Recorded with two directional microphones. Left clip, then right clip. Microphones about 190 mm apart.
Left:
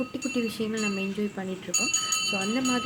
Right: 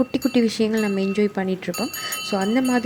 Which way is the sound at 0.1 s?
40° right (ahead or behind).